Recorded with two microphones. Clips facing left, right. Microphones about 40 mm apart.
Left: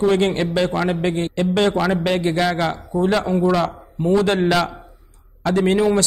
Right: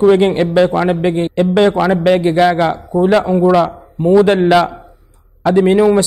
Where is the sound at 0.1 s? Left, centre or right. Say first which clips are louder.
Right 7 dB; centre.